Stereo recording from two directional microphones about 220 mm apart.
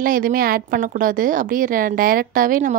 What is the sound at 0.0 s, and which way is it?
A woman's voice, 40° right (ahead or behind).